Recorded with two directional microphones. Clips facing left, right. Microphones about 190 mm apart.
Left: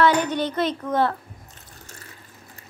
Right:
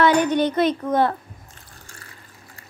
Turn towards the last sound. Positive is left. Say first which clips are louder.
# right 3 dB
turn(degrees=-15)  # may be behind; listen again after turning